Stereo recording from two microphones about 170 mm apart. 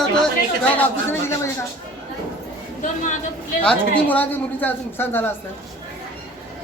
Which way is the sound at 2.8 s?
45° left (ahead or behind).